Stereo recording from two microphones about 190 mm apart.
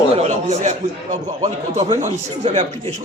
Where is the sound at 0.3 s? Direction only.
40° right (ahead or behind).